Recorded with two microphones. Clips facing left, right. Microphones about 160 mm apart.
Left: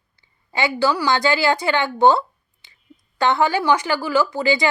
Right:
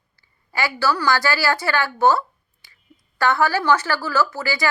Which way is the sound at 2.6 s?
20° left (ahead or behind).